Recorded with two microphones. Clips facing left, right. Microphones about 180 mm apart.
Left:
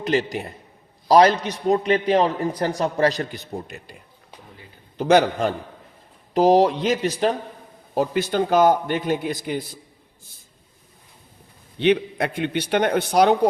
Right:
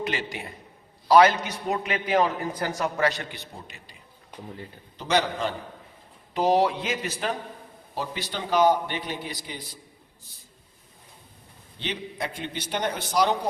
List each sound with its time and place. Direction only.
0.0 s a man's voice: 40° left (ahead or behind)
4.9 s a man's voice: 50° left (ahead or behind)
6.3 s a man's voice: 40° left (ahead or behind)
7.9 s a man's voice: 50° left (ahead or behind)
11.8 s a man's voice: 60° left (ahead or behind)